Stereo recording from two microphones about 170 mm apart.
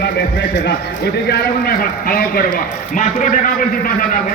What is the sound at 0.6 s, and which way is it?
A man's voice, 75° left (ahead or behind).